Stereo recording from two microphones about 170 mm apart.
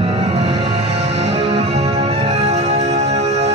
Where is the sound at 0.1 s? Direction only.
35° right (ahead or behind).